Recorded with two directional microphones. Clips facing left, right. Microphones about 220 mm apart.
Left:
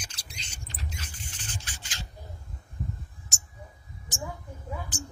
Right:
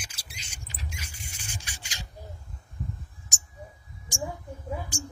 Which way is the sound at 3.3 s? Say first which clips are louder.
Left 2 dB; 15° right (ahead or behind).